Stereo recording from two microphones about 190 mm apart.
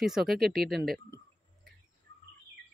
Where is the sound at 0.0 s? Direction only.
Centre (ahead or behind).